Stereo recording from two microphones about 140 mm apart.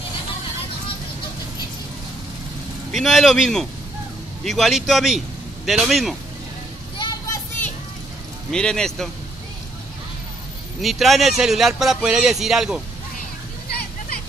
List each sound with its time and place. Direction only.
2.9 s speech: centre (ahead or behind)
7.0 s a sound: 25° left (ahead or behind)
8.5 s speech: 5° left (ahead or behind)
10.8 s speech: centre (ahead or behind)
13.7 s hubbub: 90° left